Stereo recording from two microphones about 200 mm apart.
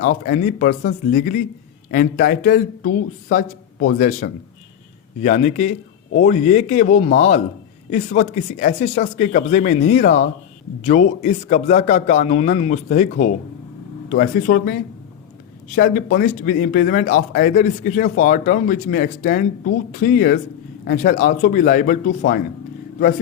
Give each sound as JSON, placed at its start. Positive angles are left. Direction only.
{"t": 0.0, "sound": "a man's voice", "side_deg": 45}